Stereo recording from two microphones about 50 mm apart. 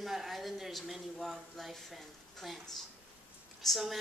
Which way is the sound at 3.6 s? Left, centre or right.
Centre.